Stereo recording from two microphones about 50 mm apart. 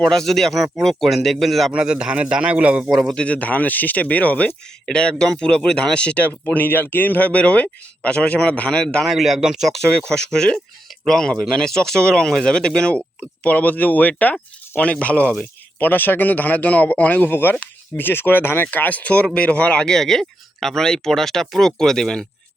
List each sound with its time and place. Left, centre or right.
0.0 s speech: centre
1.7 s speech: centre
2.9 s a man's voice: centre
3.2 s speech: left
4.9 s speech: centre
6.5 s speech: left; by 9.0 s centre
9.0 s a man's voice: centre
9.9 s speech: centre
13.4 s speech: left
15.8 s speech: left
17.9 s speech: left
19.8 s speech: centre